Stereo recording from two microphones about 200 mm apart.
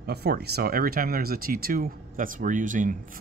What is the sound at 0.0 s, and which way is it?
Speech, 55° right (ahead or behind).